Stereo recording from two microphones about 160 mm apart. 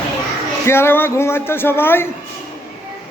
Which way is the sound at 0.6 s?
15° left (ahead or behind).